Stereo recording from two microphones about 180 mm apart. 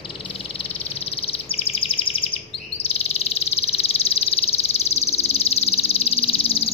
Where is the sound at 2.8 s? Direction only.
35° left (ahead or behind).